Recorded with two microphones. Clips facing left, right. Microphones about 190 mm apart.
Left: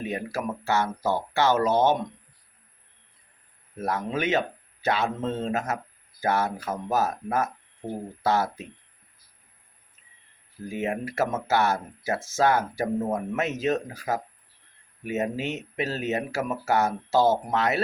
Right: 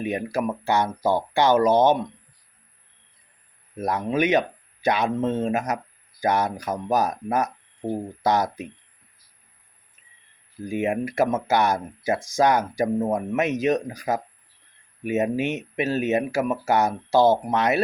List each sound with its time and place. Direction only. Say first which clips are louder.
0.0 s speech: right 5 dB; 15° right (ahead or behind)
3.8 s speech: right 5 dB; 15° right (ahead or behind)
10.7 s speech: right 5 dB; 15° right (ahead or behind)